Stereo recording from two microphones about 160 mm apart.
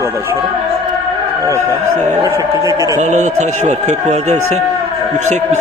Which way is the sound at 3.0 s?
45° right (ahead or behind).